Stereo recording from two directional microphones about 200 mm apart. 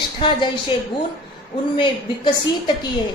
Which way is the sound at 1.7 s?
25° left (ahead or behind).